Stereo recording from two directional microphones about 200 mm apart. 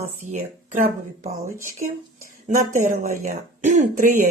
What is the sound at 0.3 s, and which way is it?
Speech, 35° right (ahead or behind).